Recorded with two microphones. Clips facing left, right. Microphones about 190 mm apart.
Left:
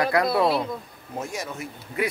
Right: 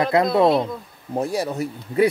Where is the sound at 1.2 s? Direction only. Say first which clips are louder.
Right 9 dB; 35° right (ahead or behind).